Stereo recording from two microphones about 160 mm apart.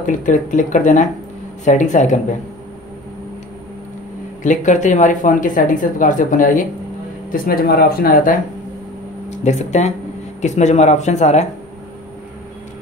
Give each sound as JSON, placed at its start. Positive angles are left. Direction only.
{"t": 0.0, "sound": "speech", "side_deg": 55}
{"t": 4.4, "sound": "speech", "side_deg": 50}
{"t": 7.2, "sound": "speech", "side_deg": 65}
{"t": 9.4, "sound": "speech", "side_deg": 45}